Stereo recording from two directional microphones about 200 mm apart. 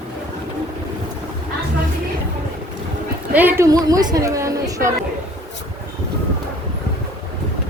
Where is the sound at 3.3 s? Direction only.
10° right (ahead or behind).